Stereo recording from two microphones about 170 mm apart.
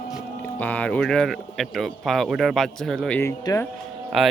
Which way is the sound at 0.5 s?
10° left (ahead or behind).